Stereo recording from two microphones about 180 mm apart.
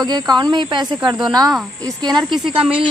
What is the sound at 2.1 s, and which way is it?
Speech, centre (ahead or behind).